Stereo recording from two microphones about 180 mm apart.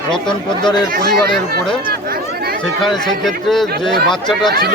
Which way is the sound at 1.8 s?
55° right (ahead or behind).